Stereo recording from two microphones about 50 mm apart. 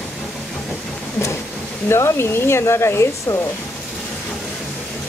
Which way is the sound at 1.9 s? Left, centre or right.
Left.